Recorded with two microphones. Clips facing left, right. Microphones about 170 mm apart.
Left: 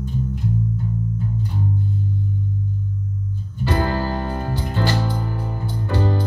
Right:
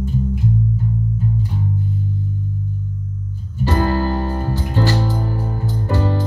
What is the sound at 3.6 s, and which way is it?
Music, 40° right (ahead or behind).